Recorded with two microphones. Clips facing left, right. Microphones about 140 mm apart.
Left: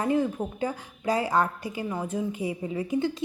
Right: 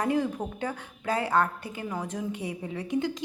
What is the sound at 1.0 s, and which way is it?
A woman's voice, 10° left (ahead or behind).